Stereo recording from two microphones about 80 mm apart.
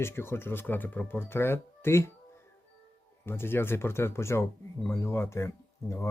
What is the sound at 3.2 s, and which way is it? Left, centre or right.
Speech, left.